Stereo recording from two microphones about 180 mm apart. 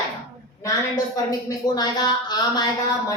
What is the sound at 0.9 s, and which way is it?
A woman's voice, 20° left (ahead or behind).